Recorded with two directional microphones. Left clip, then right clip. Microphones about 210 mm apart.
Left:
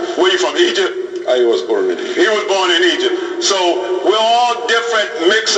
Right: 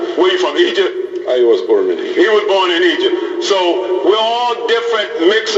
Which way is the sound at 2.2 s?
30° right (ahead or behind).